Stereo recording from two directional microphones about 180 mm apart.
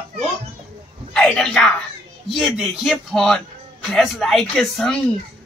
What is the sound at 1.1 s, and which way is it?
A woman's voice, 5° left (ahead or behind).